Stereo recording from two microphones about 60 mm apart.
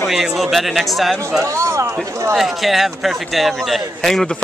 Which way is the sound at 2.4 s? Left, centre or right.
Centre.